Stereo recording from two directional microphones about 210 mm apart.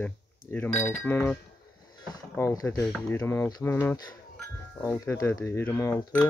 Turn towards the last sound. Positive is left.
turn(degrees=15)  # may be behind; listen again after turning